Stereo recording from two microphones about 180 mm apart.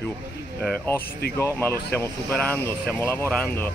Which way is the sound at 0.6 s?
5° left (ahead or behind).